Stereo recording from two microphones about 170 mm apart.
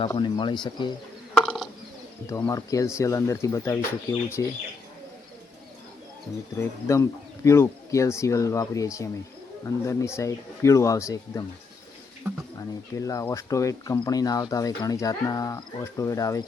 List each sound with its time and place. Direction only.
0.1 s speech: 25° left (ahead or behind)
1.4 s a sound: centre (ahead or behind)
2.2 s speech: 20° left (ahead or behind)
6.6 s speech: 15° left (ahead or behind)
12.5 s speech: 20° left (ahead or behind)